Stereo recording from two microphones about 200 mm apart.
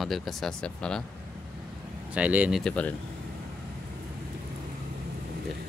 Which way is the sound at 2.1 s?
5° right (ahead or behind).